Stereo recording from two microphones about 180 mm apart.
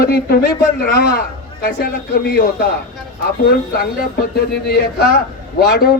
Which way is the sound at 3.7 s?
60° left (ahead or behind).